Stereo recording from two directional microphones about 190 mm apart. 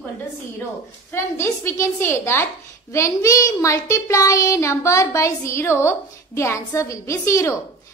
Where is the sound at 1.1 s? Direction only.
15° left (ahead or behind).